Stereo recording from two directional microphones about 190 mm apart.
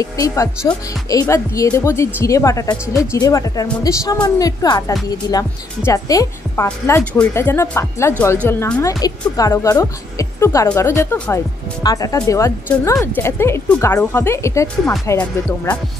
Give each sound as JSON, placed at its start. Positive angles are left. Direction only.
{"t": 0.0, "sound": "a woman's voice", "side_deg": 15}